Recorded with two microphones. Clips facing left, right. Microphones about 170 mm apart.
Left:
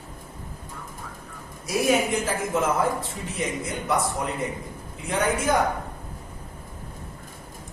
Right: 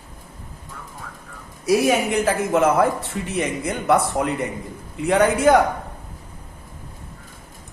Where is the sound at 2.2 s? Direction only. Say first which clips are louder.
Right 7 dB; 65° right (ahead or behind).